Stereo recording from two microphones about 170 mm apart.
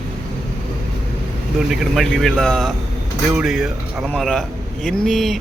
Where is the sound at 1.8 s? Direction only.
Centre (ahead or behind).